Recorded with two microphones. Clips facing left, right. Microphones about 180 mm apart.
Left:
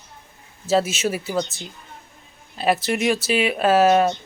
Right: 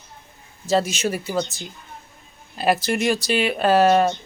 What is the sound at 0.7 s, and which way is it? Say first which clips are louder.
Speech: left 1 dB; 5° left (ahead or behind).